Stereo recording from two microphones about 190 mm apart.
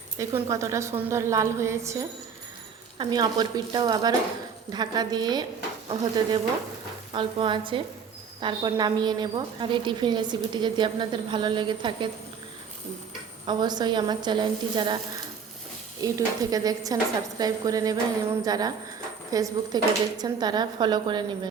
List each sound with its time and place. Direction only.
0.2 s a woman's voice: 15° right (ahead or behind)
13.5 s a woman's voice: 20° right (ahead or behind)
16.0 s a woman's voice: 20° right (ahead or behind)